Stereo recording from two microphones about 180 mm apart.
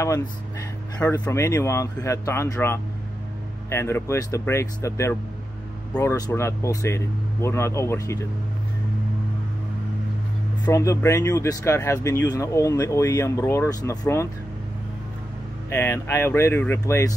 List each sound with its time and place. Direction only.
0.9 s speech: 10° left (ahead or behind)
10.6 s speech: 15° left (ahead or behind)
15.7 s speech: 15° left (ahead or behind)